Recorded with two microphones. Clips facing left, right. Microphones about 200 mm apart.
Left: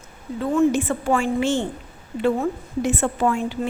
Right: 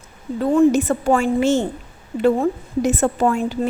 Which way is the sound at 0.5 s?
35° right (ahead or behind).